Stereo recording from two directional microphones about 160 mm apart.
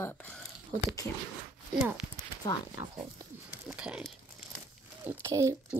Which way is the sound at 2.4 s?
25° left (ahead or behind).